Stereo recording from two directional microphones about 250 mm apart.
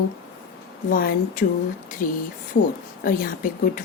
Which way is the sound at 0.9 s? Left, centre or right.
Left.